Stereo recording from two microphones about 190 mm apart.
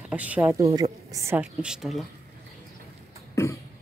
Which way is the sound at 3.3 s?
15° left (ahead or behind).